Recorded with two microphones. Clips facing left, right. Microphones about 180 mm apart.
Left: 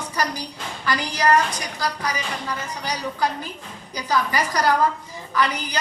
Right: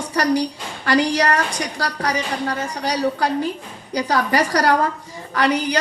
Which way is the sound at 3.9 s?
65° right (ahead or behind).